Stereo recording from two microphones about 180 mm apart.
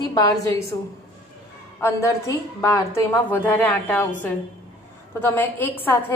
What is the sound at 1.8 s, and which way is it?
A woman's voice, 15° left (ahead or behind).